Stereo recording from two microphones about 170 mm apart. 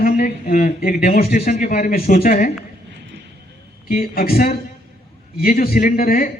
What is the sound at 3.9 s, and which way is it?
A man's voice, 60° left (ahead or behind).